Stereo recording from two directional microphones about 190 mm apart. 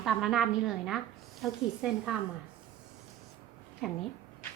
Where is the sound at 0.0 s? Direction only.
Centre (ahead or behind).